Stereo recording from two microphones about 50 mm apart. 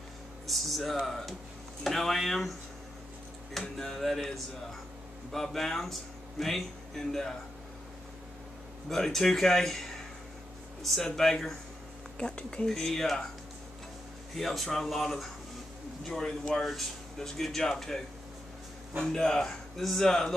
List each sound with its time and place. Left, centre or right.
0.5 s speech: centre
3.6 s speech: centre
5.3 s speech: centre
8.8 s speech: centre
12.6 s speech: centre
14.3 s speech: centre